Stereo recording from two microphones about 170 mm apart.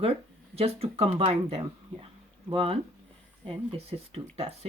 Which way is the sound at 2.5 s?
35° right (ahead or behind).